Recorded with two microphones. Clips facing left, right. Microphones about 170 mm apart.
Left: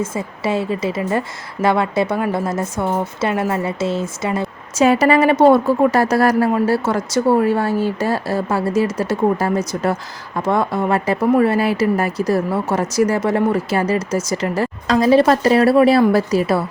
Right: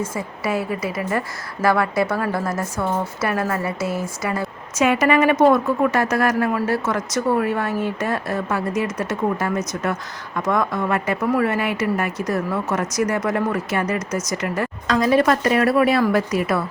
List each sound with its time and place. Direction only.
0.0 s a woman's voice: 25° left (ahead or behind)